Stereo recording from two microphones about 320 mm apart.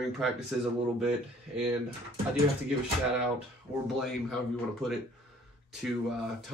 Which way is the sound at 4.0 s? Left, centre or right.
Centre.